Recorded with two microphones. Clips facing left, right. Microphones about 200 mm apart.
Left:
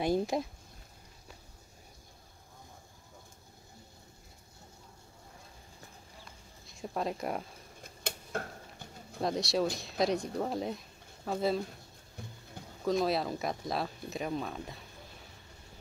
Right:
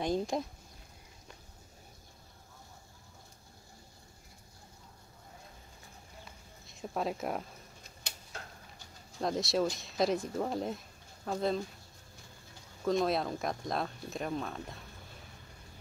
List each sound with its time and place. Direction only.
0.0 s speech: 5° left (ahead or behind)
6.7 s speech: centre (ahead or behind)
7.8 s a sound: 55° left (ahead or behind)
9.2 s speech: centre (ahead or behind)
12.8 s speech: centre (ahead or behind)